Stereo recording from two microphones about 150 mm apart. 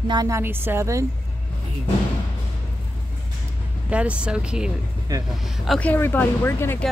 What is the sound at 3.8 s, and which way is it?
A woman's voice, 10° right (ahead or behind).